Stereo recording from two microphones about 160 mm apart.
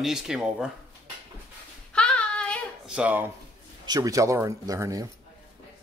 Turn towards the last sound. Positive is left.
turn(degrees=-20)  # may be behind; listen again after turning